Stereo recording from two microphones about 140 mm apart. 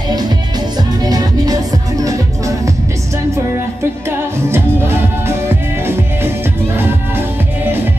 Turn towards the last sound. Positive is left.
turn(degrees=-15)  # may be behind; listen again after turning